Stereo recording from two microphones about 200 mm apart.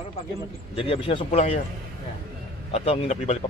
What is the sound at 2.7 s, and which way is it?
Speech, 30° left (ahead or behind).